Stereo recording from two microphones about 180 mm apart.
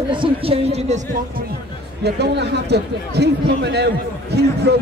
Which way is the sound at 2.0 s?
70° right (ahead or behind).